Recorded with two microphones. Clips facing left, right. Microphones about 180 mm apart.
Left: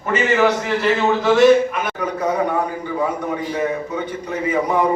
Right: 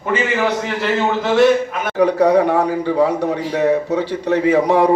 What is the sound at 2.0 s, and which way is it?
A man's voice, 70° right (ahead or behind).